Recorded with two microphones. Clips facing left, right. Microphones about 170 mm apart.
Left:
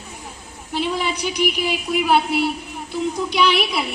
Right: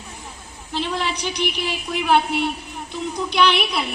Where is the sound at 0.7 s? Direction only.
10° left (ahead or behind).